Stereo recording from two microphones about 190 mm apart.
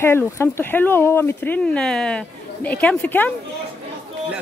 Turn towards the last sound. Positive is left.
turn(degrees=10)  # may be behind; listen again after turning